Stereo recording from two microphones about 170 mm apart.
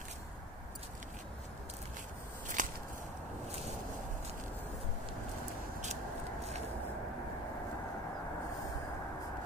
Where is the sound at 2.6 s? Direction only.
50° right (ahead or behind).